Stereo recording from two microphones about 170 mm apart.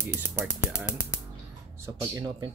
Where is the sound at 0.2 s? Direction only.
10° right (ahead or behind).